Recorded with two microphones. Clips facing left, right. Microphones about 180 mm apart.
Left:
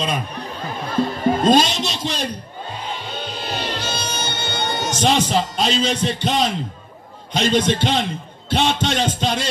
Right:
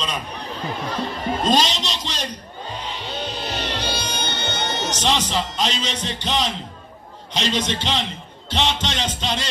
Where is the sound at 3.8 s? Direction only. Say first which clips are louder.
Even; 50° left (ahead or behind).